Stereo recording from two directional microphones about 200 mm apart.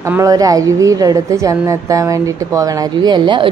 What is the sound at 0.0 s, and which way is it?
A woman's voice, 15° right (ahead or behind).